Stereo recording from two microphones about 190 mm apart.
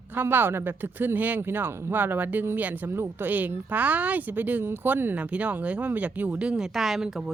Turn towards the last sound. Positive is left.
turn(degrees=0)  # may be behind; listen again after turning